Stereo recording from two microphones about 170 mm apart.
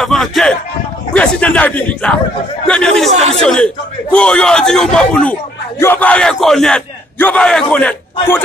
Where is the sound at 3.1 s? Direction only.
40° right (ahead or behind).